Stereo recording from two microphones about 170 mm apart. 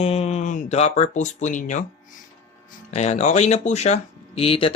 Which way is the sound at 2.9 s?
40° left (ahead or behind).